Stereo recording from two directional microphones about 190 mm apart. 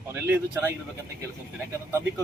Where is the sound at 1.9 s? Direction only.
15° right (ahead or behind).